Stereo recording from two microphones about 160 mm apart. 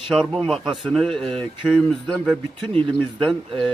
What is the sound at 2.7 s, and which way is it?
Speech, 35° right (ahead or behind).